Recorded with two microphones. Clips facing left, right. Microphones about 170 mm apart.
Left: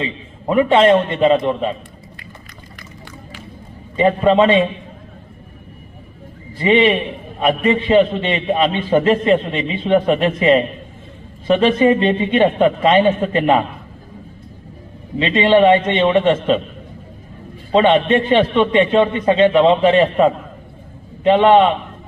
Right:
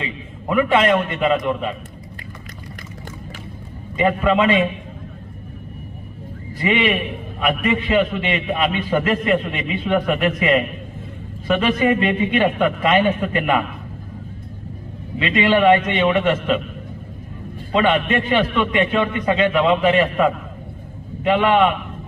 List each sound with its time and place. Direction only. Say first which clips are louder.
0.0 s a man's voice: left 4 dB; 30° left (ahead or behind)
3.9 s a man's voice: left 4 dB; 30° left (ahead or behind)
6.6 s a man's voice: left 5 dB; 30° left (ahead or behind)
15.2 s a man's voice: left 4 dB; 30° left (ahead or behind)
17.7 s a man's voice: left 5 dB; 30° left (ahead or behind)